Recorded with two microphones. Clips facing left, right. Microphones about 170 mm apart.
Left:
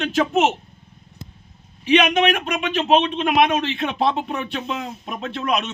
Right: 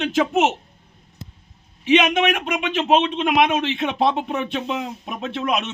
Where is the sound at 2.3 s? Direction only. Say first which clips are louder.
Even; 10° right (ahead or behind).